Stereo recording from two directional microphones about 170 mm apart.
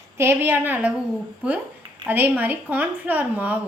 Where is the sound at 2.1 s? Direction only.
10° right (ahead or behind).